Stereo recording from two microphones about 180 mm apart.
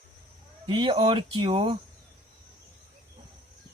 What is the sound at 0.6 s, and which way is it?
Speech, 30° right (ahead or behind).